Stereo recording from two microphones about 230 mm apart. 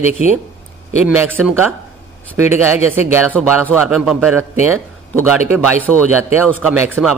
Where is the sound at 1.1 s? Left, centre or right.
Centre.